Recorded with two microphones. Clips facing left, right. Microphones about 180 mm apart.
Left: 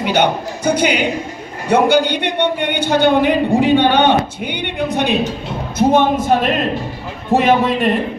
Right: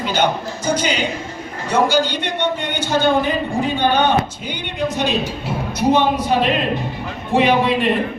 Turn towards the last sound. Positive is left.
turn(degrees=45)  # may be behind; listen again after turning